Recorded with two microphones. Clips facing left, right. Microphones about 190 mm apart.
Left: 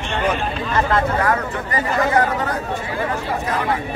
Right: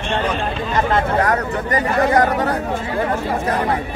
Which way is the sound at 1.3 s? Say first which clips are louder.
Right 3 dB; 35° right (ahead or behind).